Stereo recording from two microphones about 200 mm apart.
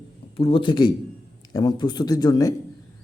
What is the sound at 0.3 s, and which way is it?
A man's voice, 25° left (ahead or behind).